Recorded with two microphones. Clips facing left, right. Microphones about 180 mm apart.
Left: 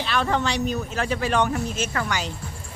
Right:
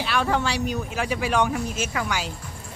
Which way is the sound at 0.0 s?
5° right (ahead or behind).